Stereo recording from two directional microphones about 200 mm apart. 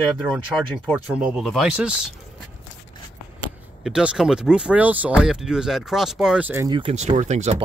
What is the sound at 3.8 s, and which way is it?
Speech, 5° right (ahead or behind).